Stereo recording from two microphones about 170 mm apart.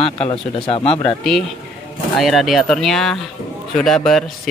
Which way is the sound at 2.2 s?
Centre (ahead or behind).